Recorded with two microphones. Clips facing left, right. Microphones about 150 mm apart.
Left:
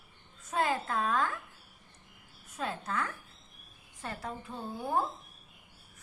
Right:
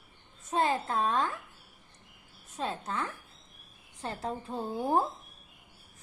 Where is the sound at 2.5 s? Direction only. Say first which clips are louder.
Right 1 dB; 25° right (ahead or behind).